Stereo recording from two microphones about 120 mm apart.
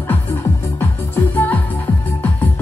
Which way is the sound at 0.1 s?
20° left (ahead or behind).